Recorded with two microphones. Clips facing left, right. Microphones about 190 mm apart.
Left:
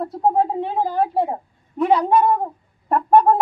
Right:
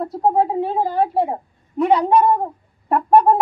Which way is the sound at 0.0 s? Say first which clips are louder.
Right 1 dB; 5° right (ahead or behind).